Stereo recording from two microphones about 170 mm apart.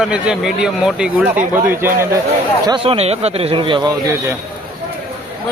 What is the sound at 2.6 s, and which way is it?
Speech, 30° right (ahead or behind).